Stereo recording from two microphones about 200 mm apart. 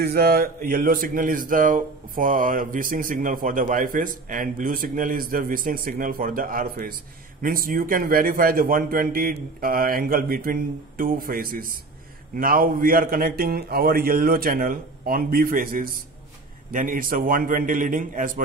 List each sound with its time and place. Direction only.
0.0 s speech: 50° right (ahead or behind)